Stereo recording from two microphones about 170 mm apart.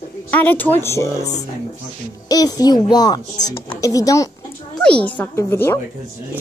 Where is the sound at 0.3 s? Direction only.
10° left (ahead or behind).